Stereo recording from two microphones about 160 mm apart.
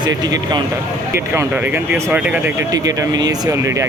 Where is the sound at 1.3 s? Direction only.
15° right (ahead or behind).